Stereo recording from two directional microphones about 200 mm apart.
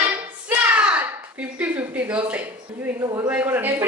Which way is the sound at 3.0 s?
20° right (ahead or behind).